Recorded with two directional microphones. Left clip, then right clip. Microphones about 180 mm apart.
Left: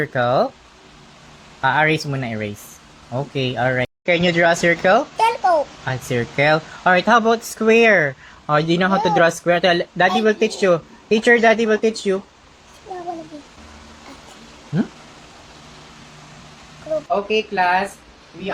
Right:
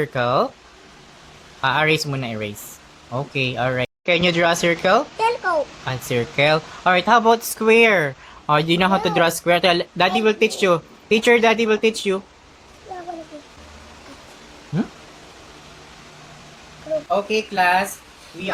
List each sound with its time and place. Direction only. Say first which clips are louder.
0.0 s speech: left 2 dB; centre (ahead or behind)
1.6 s speech: left 1 dB; centre (ahead or behind)
5.1 s babbling: left 4 dB; 20° right (ahead or behind)
5.8 s speech: even; 5° left (ahead or behind)
17.1 s speech: left 1 dB; 15° right (ahead or behind)